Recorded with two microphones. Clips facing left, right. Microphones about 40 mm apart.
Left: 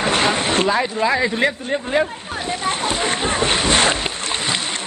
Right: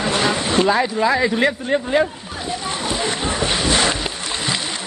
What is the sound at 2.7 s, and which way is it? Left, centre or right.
Boat, left.